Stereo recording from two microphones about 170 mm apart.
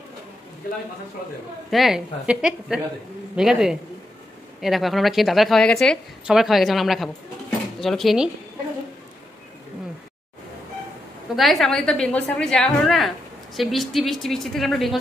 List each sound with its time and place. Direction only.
1.7 s a woman's voice: centre (ahead or behind)
11.3 s a woman's voice: centre (ahead or behind)